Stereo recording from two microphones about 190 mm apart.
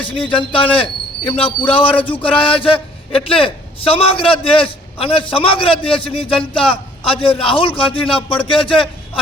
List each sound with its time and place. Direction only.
0.0 s a man's voice: 25° left (ahead or behind)